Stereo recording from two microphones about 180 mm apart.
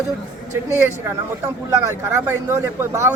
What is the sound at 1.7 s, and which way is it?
Speech, 15° right (ahead or behind).